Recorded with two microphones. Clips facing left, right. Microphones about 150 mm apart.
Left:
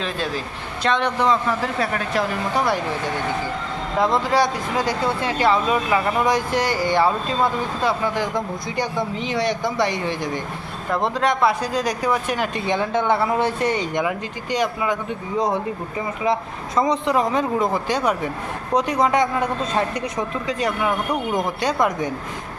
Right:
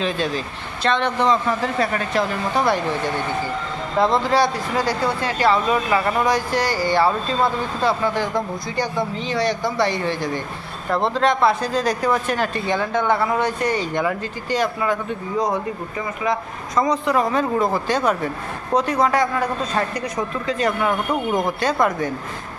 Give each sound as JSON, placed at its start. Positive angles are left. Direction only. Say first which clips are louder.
{"t": 0.0, "sound": "speech", "louder": "right 3 dB", "side_deg": 0}
{"t": 3.9, "sound": "speech", "louder": "right 1 dB", "side_deg": 10}